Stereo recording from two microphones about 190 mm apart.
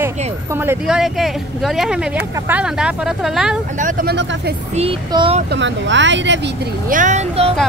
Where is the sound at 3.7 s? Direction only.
45° right (ahead or behind).